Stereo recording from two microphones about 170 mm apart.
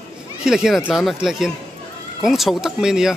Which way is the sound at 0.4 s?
5° right (ahead or behind).